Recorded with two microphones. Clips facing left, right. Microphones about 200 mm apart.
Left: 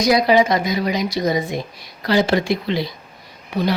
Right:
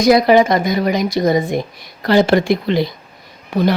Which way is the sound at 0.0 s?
50° right (ahead or behind).